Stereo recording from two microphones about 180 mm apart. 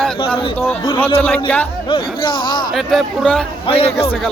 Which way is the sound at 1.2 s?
10° left (ahead or behind).